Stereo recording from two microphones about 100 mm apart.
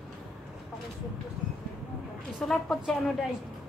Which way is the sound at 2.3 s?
5° left (ahead or behind).